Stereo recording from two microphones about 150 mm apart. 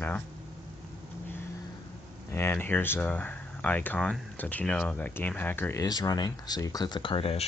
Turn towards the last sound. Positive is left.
turn(degrees=40)  # may be behind; listen again after turning